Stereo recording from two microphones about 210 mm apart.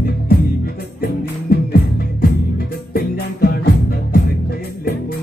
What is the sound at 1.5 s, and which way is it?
Music, 45° left (ahead or behind).